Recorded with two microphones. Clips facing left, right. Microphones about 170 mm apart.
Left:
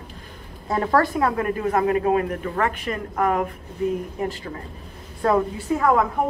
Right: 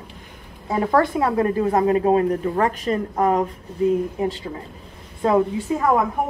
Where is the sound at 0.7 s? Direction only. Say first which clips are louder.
Right 1 dB; 15° right (ahead or behind).